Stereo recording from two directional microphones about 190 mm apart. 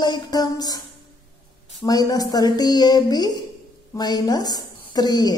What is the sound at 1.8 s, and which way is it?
A woman's voice, 20° left (ahead or behind).